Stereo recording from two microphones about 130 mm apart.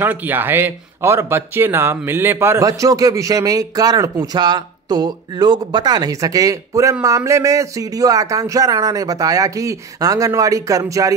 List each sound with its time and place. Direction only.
0.0 s speech: 15° right (ahead or behind)